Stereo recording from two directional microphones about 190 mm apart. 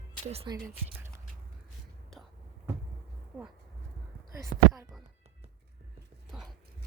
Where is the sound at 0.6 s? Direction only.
10° right (ahead or behind).